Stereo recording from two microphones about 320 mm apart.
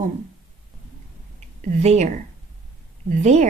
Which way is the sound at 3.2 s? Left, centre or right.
Right.